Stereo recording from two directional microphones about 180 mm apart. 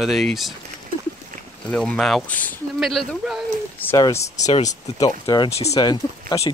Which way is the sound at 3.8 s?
15° left (ahead or behind).